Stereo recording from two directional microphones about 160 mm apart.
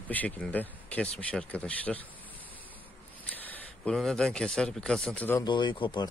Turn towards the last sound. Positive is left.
turn(degrees=30)  # may be behind; listen again after turning